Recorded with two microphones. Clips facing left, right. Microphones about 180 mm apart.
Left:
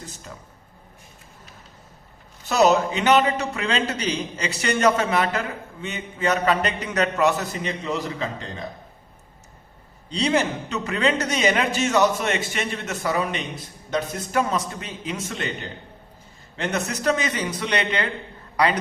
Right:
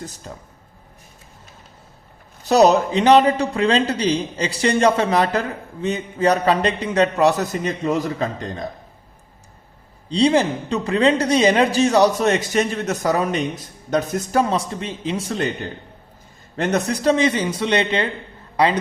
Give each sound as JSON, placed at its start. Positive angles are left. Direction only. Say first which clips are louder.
{"t": 2.4, "sound": "a man's voice", "louder": "right 4 dB", "side_deg": -35}
{"t": 10.1, "sound": "a man's voice", "louder": "right 6 dB", "side_deg": -30}
{"t": 14.5, "sound": "a man's voice", "louder": "right 4 dB", "side_deg": -30}
{"t": 16.6, "sound": "a man's voice", "louder": "right 6 dB", "side_deg": -40}